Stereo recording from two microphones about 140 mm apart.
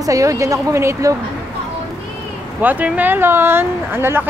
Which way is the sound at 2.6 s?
10° right (ahead or behind).